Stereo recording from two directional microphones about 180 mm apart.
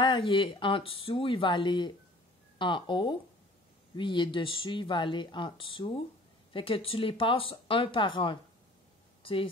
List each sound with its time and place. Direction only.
0.0 s speech: 25° left (ahead or behind)